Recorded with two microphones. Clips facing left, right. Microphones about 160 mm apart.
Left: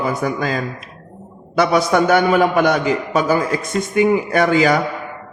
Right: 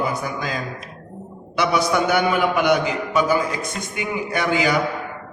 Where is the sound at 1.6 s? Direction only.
45° left (ahead or behind).